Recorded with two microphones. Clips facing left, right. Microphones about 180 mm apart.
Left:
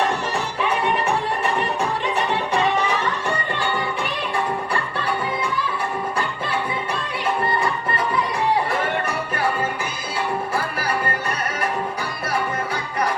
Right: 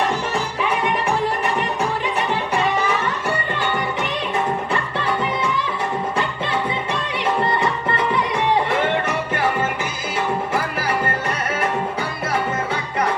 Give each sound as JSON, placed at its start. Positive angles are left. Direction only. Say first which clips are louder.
{"t": 4.0, "sound": "music", "louder": "right 2 dB", "side_deg": -20}
{"t": 7.2, "sound": "music", "louder": "right 2 dB", "side_deg": -25}
{"t": 12.3, "sound": "music", "louder": "right 1 dB", "side_deg": -25}